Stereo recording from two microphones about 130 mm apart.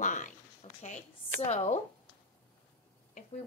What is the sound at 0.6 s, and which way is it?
A woman's voice, 60° left (ahead or behind).